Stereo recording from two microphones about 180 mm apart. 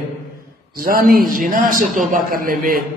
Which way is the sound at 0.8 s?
55° right (ahead or behind).